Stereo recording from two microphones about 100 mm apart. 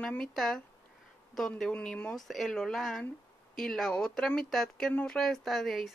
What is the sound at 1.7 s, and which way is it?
Speech, 10° left (ahead or behind).